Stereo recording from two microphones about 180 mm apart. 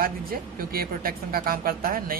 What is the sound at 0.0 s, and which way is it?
A man's voice, 55° right (ahead or behind).